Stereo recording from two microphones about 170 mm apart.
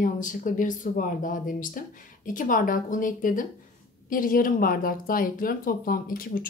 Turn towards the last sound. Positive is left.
turn(degrees=55)  # may be behind; listen again after turning